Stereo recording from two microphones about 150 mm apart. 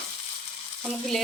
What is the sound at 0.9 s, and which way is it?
Frying, centre (ahead or behind).